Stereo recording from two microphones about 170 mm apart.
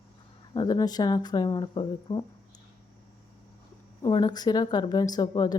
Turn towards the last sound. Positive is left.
turn(degrees=25)  # may be behind; listen again after turning